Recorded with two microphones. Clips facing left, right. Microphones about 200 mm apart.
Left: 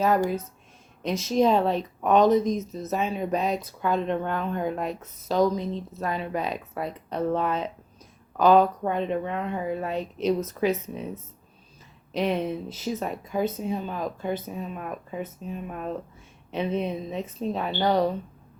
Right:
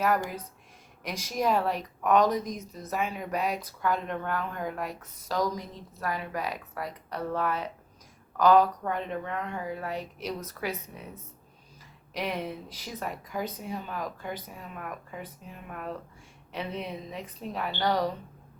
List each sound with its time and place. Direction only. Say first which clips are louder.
0.0 s a woman's voice: left 5 dB; 25° left (ahead or behind)
9.9 s speech: left 6 dB; 10° right (ahead or behind)
10.5 s a woman's voice: left 10 dB; 25° left (ahead or behind)
12.4 s speech: left 7 dB; 15° right (ahead or behind)
12.9 s a woman's voice: left 6 dB; 25° left (ahead or behind)